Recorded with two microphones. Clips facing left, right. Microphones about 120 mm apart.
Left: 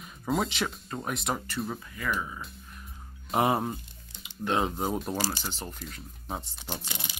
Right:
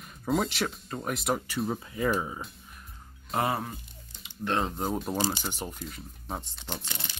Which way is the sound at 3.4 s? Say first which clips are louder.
Left 4 dB; 25° left (ahead or behind).